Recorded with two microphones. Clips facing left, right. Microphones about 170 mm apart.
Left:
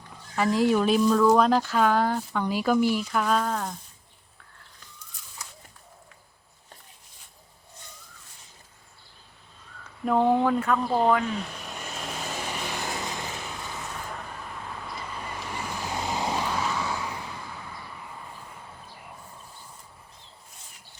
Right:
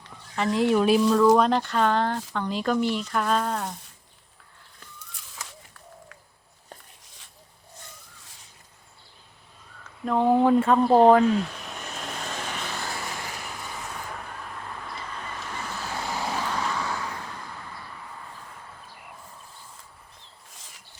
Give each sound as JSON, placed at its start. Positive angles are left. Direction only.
{"t": 0.3, "sound": "speech", "side_deg": 5}
{"t": 5.4, "sound": "a sound", "side_deg": -90}
{"t": 10.0, "sound": "speech", "side_deg": 0}
{"t": 10.4, "sound": "speech", "side_deg": -25}
{"t": 11.3, "sound": "vehicle", "side_deg": 0}
{"t": 14.1, "sound": "vehicle", "side_deg": 5}